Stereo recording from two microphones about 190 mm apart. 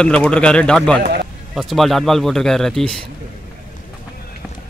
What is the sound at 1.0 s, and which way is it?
Run, 55° right (ahead or behind).